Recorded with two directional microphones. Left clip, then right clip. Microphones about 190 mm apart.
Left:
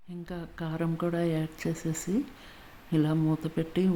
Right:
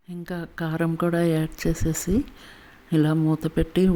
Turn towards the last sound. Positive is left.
turn(degrees=-25)  # may be behind; listen again after turning